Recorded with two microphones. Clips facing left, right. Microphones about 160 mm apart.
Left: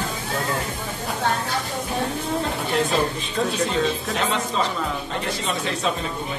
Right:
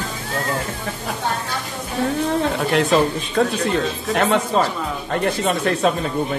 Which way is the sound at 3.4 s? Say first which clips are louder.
Right 5 dB; 65° right (ahead or behind).